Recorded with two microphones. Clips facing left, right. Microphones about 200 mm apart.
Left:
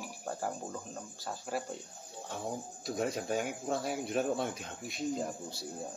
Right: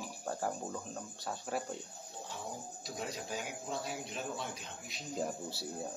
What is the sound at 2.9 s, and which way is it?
Speech, 55° left (ahead or behind).